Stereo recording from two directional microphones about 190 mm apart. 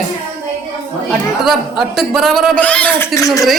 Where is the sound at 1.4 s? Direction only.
Centre (ahead or behind); by 3.5 s 15° left (ahead or behind).